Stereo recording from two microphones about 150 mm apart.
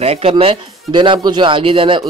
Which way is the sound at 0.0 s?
40° right (ahead or behind).